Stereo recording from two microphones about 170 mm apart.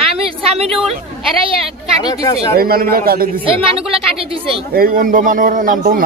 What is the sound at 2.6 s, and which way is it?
Speech, 60° right (ahead or behind).